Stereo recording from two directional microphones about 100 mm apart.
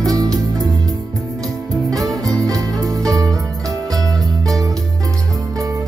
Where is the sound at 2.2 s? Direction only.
40° right (ahead or behind).